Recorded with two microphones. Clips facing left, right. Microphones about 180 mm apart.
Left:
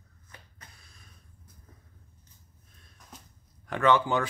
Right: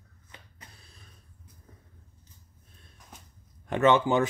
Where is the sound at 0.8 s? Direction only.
30° right (ahead or behind).